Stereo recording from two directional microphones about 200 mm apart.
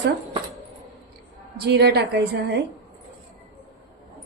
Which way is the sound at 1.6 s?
55° right (ahead or behind).